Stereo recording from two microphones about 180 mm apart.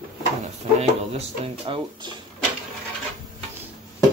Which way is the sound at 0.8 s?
35° right (ahead or behind).